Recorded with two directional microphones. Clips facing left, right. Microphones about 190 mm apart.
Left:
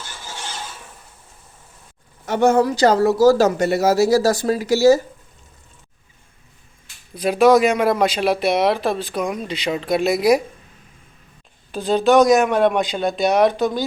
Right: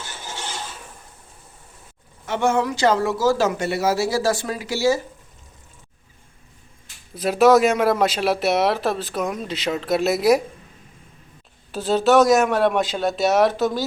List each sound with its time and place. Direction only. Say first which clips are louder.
2.2 s speech: left 5 dB; 40° left (ahead or behind)
7.1 s speech: left 1 dB; 5° right (ahead or behind)
11.7 s speech: left 2 dB; 5° right (ahead or behind)